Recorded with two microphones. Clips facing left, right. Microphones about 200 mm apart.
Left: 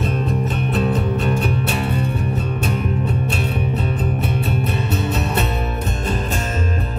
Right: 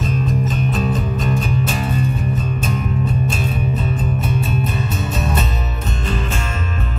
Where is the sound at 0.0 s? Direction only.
60° left (ahead or behind).